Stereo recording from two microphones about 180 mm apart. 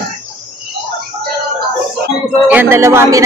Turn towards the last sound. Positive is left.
turn(degrees=-15)  # may be behind; listen again after turning